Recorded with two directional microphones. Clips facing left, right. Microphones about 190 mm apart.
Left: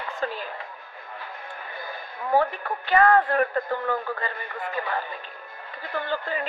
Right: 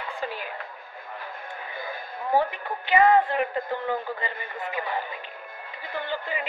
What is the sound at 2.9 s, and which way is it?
A man's voice, 20° right (ahead or behind).